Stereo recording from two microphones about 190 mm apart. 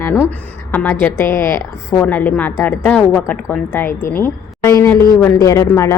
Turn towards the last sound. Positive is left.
turn(degrees=15)  # may be behind; listen again after turning